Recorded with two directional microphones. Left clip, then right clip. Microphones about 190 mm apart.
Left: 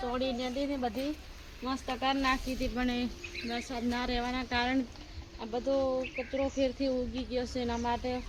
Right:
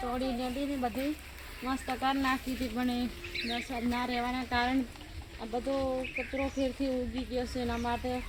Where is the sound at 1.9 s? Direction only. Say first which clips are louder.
Left 1 dB; 25° left (ahead or behind).